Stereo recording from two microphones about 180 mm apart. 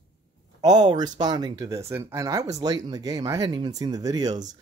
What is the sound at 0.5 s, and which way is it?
Speech, 20° right (ahead or behind).